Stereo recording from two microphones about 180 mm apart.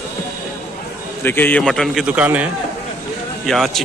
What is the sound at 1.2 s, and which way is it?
A man's voice, 10° left (ahead or behind).